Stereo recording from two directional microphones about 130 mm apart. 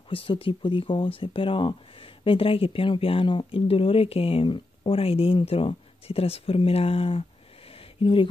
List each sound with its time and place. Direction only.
0.1 s speech: 45° left (ahead or behind)